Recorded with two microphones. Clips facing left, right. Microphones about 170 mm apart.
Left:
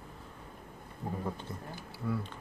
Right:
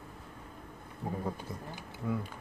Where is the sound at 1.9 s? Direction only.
20° right (ahead or behind).